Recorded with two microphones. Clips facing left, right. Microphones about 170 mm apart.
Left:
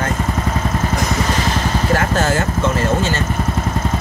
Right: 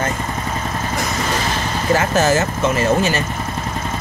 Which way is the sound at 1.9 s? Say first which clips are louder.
Right 3 dB; 10° right (ahead or behind).